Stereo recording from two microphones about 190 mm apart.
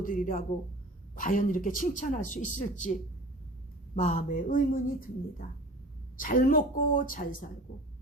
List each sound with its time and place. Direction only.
0.0 s speech: 45° left (ahead or behind)